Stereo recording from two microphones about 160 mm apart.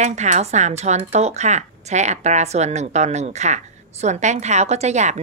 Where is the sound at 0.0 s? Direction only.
45° right (ahead or behind).